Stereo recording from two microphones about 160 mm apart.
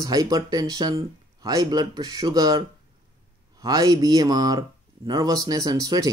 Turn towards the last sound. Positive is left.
turn(degrees=-25)  # may be behind; listen again after turning